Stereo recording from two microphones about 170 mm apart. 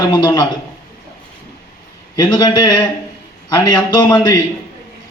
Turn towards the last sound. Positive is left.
turn(degrees=20)  # may be behind; listen again after turning